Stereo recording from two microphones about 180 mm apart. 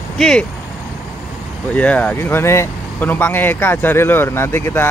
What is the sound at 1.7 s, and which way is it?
Speech, 10° left (ahead or behind).